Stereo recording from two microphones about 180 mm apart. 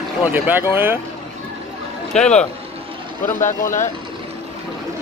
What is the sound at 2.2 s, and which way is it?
Speech, 5° left (ahead or behind).